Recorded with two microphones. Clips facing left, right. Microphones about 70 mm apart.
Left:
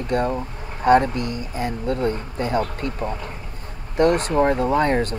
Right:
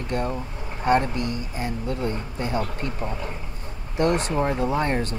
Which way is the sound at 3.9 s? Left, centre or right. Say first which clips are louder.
Left 5 dB; left.